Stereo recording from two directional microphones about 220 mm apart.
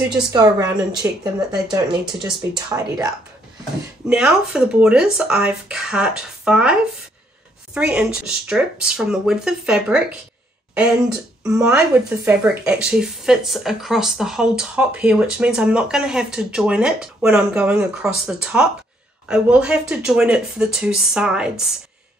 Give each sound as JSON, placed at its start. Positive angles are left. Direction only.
{"t": 0.1, "sound": "speech", "side_deg": -15}
{"t": 4.1, "sound": "speech", "side_deg": -5}
{"t": 10.7, "sound": "a sound", "side_deg": -5}
{"t": 11.4, "sound": "speech", "side_deg": -10}